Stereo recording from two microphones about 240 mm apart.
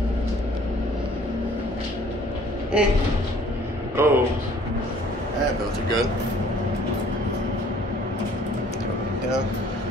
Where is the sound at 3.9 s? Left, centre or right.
Centre.